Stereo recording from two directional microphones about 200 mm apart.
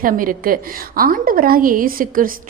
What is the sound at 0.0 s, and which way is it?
A woman's voice, 45° right (ahead or behind).